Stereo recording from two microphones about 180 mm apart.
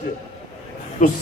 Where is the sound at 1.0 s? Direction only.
45° left (ahead or behind).